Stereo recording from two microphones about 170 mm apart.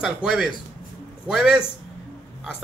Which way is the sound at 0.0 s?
Centre (ahead or behind).